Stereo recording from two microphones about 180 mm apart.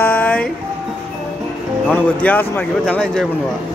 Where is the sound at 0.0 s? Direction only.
10° left (ahead or behind).